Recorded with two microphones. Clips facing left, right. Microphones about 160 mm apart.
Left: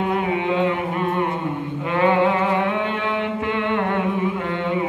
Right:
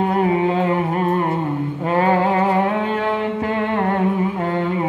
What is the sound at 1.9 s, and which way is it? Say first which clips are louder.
Music: right 1 dB; 40° right (ahead or behind).